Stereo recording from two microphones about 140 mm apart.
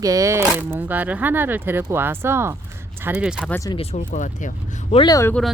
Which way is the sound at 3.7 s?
45° left (ahead or behind).